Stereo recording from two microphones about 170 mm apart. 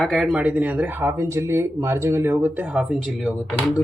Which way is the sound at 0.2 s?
5° right (ahead or behind).